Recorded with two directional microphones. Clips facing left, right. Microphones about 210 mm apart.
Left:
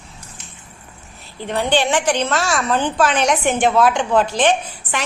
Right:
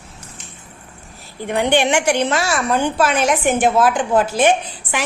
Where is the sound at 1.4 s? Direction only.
15° right (ahead or behind).